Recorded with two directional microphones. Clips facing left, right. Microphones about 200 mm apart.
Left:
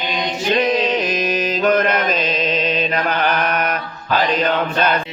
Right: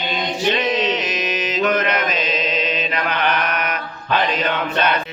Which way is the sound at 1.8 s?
50° left (ahead or behind).